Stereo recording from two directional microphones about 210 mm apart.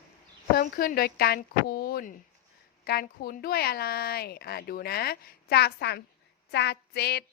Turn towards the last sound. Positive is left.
turn(degrees=50)  # may be behind; listen again after turning